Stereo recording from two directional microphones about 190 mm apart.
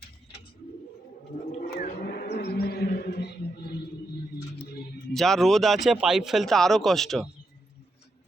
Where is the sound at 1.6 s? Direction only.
55° left (ahead or behind).